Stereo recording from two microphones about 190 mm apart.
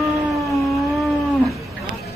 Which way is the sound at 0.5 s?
Centre (ahead or behind).